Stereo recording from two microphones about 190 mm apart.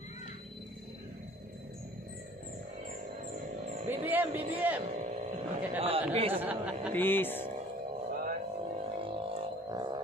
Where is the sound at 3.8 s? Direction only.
10° right (ahead or behind).